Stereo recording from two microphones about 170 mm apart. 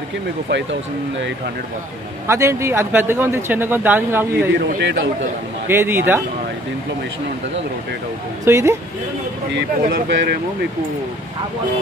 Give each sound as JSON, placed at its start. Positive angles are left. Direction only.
{"t": 0.5, "sound": "speech", "side_deg": -90}
{"t": 2.2, "sound": "a man's voice", "side_deg": -15}
{"t": 4.6, "sound": "speech", "side_deg": -70}
{"t": 5.7, "sound": "a man's voice", "side_deg": -15}
{"t": 8.5, "sound": "a man's voice", "side_deg": -15}
{"t": 9.5, "sound": "speech", "side_deg": -85}